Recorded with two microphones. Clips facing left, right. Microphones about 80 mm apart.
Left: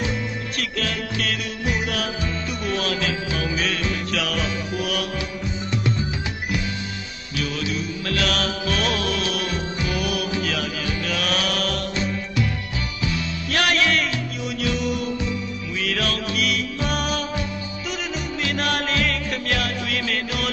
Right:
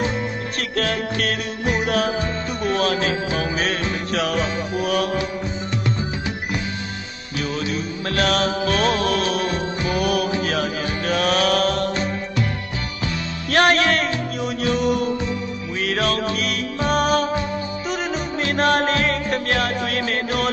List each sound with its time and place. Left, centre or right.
0.5 s music: right
7.3 s music: right
13.5 s music: right